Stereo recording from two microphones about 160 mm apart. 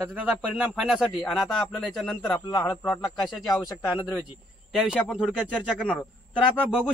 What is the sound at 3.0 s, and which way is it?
Speech, centre (ahead or behind).